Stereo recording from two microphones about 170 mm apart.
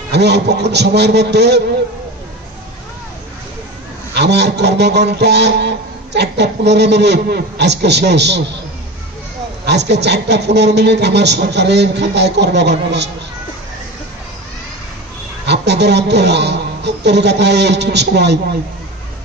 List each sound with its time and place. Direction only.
0.1 s a man's voice: 80° right
4.1 s a man's voice: 80° right
9.7 s a man's voice: 80° right
15.4 s a man's voice: 85° right